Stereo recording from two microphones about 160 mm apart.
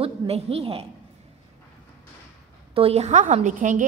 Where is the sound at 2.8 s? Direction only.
40° right (ahead or behind).